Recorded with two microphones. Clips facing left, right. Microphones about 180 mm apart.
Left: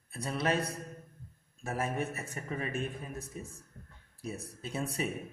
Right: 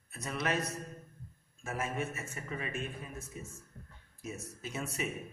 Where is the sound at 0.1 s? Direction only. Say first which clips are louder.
Left 3 dB; 30° left (ahead or behind).